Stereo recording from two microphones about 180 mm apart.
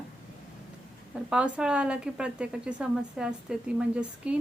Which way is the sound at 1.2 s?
5° right (ahead or behind).